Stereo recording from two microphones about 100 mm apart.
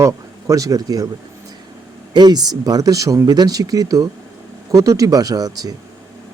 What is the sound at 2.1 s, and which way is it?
Speech, 45° right (ahead or behind).